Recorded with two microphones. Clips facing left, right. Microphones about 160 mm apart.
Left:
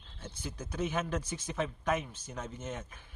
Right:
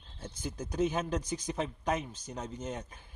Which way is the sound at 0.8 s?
40° right (ahead or behind).